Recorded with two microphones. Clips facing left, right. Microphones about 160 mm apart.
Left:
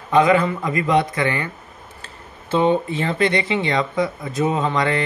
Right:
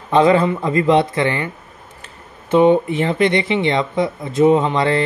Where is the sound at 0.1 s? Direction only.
30° right (ahead or behind).